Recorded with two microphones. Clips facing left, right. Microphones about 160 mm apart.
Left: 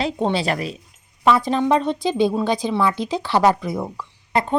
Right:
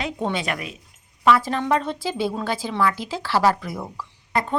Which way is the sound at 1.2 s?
20° left (ahead or behind).